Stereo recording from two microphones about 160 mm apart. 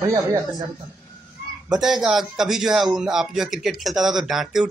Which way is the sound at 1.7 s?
Centre (ahead or behind).